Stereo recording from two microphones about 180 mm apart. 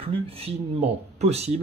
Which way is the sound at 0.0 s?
30° right (ahead or behind).